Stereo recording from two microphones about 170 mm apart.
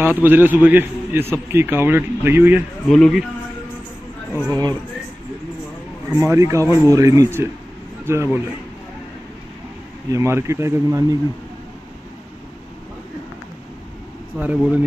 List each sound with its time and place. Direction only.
0.0 s speech: 10° right (ahead or behind)
2.9 s speech: centre (ahead or behind)
4.5 s speech: 25° right (ahead or behind)
6.0 s speech: 15° right (ahead or behind)
10.1 s speech: 15° right (ahead or behind)
14.4 s speech: 10° right (ahead or behind)